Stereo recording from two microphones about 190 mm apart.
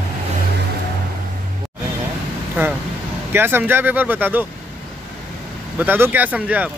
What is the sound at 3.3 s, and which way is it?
Speech, 10° right (ahead or behind).